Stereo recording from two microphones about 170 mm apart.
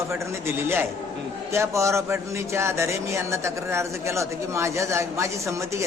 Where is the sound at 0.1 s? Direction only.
15° right (ahead or behind).